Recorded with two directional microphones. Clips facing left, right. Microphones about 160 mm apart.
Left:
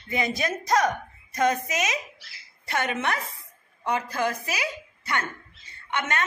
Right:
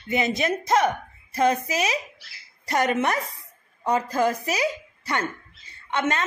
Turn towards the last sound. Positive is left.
turn(degrees=-30)  # may be behind; listen again after turning